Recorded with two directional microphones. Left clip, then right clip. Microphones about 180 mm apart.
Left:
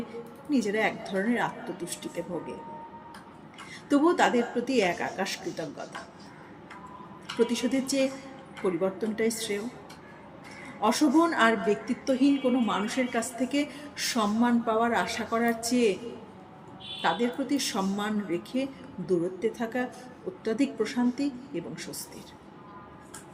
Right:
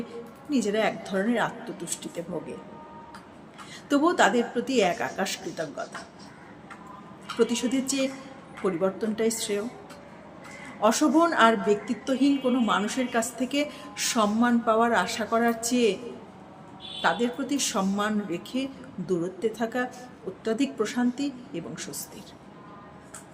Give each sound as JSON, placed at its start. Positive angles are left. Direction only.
{"t": 0.5, "sound": "speech", "side_deg": -20}
{"t": 3.8, "sound": "speech", "side_deg": -20}
{"t": 7.3, "sound": "speech", "side_deg": -20}
{"t": 10.8, "sound": "speech", "side_deg": -20}
{"t": 17.0, "sound": "speech", "side_deg": -20}